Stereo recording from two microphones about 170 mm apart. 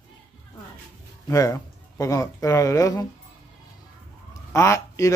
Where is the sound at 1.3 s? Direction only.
20° left (ahead or behind).